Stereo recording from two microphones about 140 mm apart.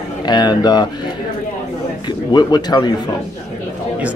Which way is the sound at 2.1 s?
30° left (ahead or behind).